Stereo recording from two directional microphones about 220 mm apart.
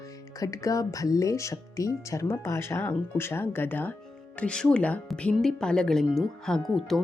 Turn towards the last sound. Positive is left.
turn(degrees=0)  # may be behind; listen again after turning